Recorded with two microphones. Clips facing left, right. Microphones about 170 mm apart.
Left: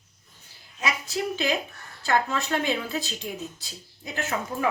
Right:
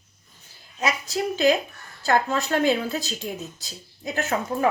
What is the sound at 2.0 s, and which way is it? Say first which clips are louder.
A woman's voice: right 3 dB; 40° right (ahead or behind).